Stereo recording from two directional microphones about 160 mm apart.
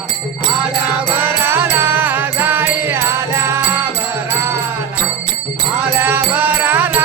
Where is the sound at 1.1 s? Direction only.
15° right (ahead or behind).